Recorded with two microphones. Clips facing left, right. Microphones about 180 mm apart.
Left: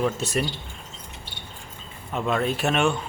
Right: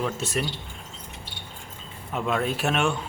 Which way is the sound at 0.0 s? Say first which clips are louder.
Left 3 dB; centre (ahead or behind).